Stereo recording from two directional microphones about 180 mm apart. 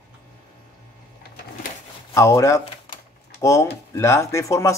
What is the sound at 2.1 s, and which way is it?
Speech, 15° left (ahead or behind).